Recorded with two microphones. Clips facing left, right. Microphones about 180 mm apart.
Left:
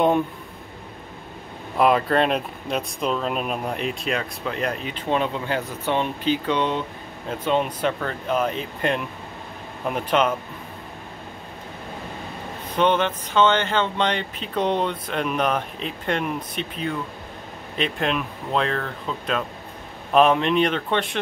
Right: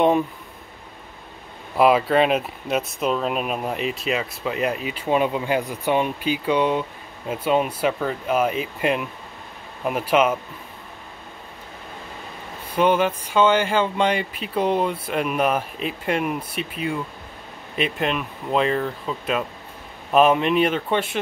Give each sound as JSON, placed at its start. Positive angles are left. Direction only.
{"t": 1.8, "sound": "speech", "side_deg": -5}
{"t": 12.7, "sound": "speech", "side_deg": -10}